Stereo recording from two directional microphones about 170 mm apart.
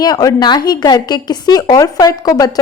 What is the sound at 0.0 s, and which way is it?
A woman's voice, 20° left (ahead or behind).